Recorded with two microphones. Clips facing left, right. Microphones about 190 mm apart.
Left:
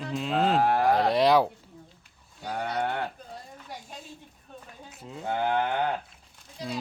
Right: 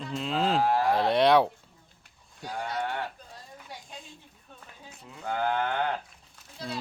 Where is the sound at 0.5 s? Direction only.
55° left (ahead or behind).